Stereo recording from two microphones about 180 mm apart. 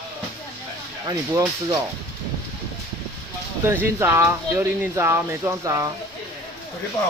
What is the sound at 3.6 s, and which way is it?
Speech, 15° right (ahead or behind).